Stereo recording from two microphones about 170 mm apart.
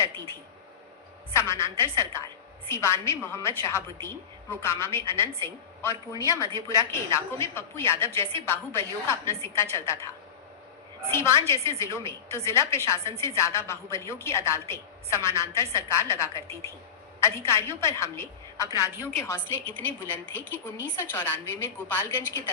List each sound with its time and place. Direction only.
1.3 s a woman's voice: 15° left (ahead or behind)
11.1 s a woman's voice: 15° left (ahead or behind)